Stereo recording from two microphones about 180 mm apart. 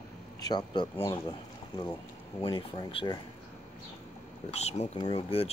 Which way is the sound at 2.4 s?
25° left (ahead or behind).